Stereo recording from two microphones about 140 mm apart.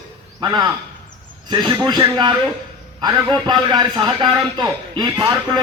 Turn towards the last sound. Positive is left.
turn(degrees=-30)  # may be behind; listen again after turning